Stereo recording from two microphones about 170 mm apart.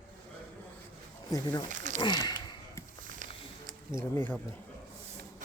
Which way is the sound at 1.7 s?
45° right (ahead or behind).